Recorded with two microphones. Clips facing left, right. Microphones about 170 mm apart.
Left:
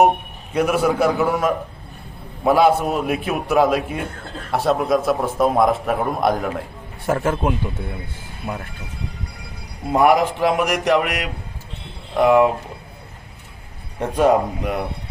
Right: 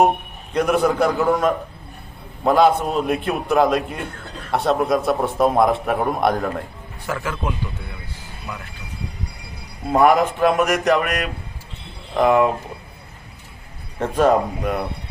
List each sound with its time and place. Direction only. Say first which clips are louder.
0.5 s a man's voice: even; 5° left (ahead or behind)
7.0 s a man's voice: left 6 dB; 50° left (ahead or behind)
8.5 s speech: left 5 dB; 35° left (ahead or behind)
9.9 s a man's voice: even; 10° left (ahead or behind)
14.2 s a man's voice: even; 10° left (ahead or behind)